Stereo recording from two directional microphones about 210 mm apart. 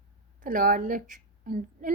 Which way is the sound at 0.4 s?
40° right (ahead or behind).